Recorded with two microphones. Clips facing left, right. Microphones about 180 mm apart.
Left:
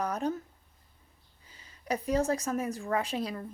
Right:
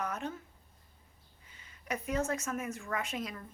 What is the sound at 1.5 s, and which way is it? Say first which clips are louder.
A woman's voice: left 5 dB; 35° left (ahead or behind).